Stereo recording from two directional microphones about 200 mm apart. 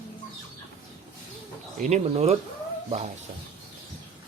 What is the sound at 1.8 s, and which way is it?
Speech, 35° right (ahead or behind).